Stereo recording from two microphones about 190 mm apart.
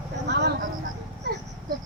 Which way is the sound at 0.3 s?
65° right (ahead or behind).